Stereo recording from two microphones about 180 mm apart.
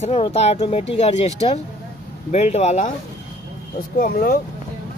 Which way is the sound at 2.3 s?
35° left (ahead or behind).